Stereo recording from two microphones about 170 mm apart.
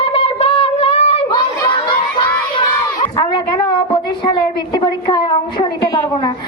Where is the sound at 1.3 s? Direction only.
25° left (ahead or behind).